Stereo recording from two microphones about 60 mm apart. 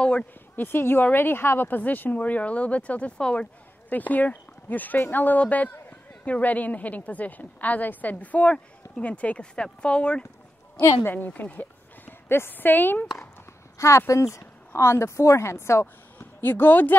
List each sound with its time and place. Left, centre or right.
0.6 s a woman's voice: left
1.7 s speech: left
3.9 s speech: left
11.1 s speech: left
12.1 s speech: left
13.7 s speech: left